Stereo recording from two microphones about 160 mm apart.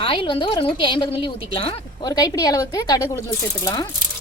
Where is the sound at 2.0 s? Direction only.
25° left (ahead or behind).